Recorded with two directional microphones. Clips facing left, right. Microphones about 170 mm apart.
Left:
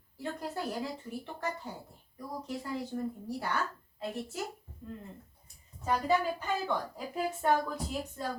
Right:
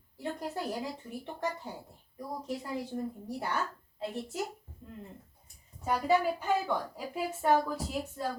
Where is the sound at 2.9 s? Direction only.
25° right (ahead or behind).